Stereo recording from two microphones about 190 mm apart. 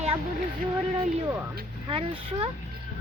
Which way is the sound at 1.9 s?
30° right (ahead or behind).